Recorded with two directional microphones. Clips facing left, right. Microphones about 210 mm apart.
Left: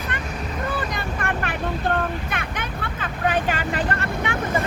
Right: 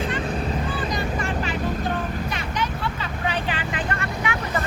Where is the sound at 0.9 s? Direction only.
60° left (ahead or behind); by 3.8 s 40° left (ahead or behind).